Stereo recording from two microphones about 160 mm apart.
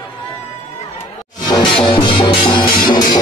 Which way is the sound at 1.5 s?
30° left (ahead or behind).